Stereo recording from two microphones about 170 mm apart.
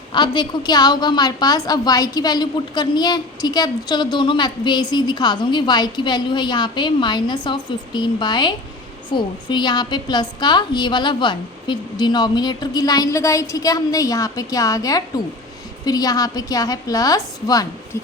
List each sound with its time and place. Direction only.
0.1 s a woman's voice: 25° left (ahead or behind)